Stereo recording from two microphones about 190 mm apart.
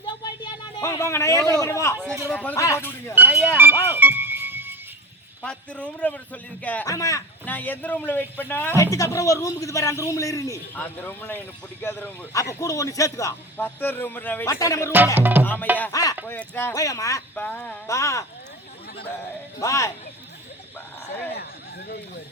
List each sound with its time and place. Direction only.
0.0 s a sound: 25° left (ahead or behind)
2.3 s a man's voice: 10° left (ahead or behind)
3.2 s music: 10° right (ahead or behind)
5.4 s a man's voice: 5° left (ahead or behind)
14.9 s music: 10° right (ahead or behind)
15.8 s a man's voice: 20° left (ahead or behind)
17.4 s a man's voice: 5° left (ahead or behind)
19.5 s a man's voice: 15° left (ahead or behind)